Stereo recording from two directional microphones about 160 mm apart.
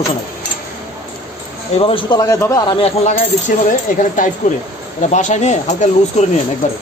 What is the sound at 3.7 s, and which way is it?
Speech, 55° left (ahead or behind).